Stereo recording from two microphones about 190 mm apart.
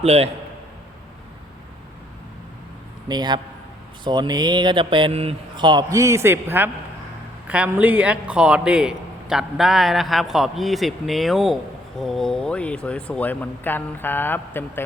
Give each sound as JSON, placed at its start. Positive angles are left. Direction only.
{"t": 0.0, "sound": "a man's voice", "side_deg": -35}
{"t": 3.1, "sound": "a man's voice", "side_deg": -25}